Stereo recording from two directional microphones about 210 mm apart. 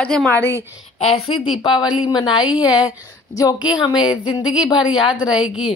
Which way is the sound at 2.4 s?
5° right (ahead or behind).